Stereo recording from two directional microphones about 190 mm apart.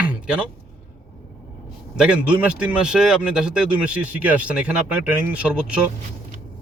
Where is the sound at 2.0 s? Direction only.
5° right (ahead or behind).